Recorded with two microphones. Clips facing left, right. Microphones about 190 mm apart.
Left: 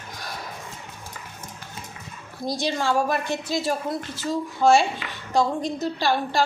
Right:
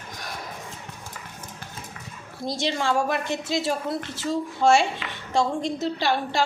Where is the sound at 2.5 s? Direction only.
20° right (ahead or behind).